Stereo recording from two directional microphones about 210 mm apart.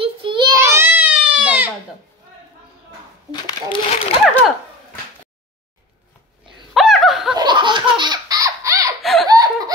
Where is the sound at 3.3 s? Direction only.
20° left (ahead or behind).